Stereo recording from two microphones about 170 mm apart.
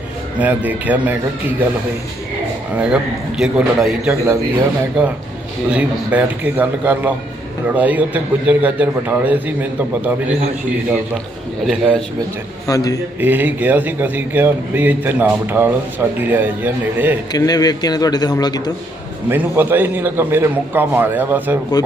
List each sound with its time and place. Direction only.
0.3 s a man's voice: 10° right (ahead or behind)
2.7 s a man's voice: 5° right (ahead or behind)
5.6 s a man's voice: 5° right (ahead or behind)
11.6 s a man's voice: 5° right (ahead or behind)
12.6 s a man's voice: 20° left (ahead or behind)
13.1 s a man's voice: 10° right (ahead or behind)
17.3 s a man's voice: 20° left (ahead or behind)
19.3 s a man's voice: 10° right (ahead or behind)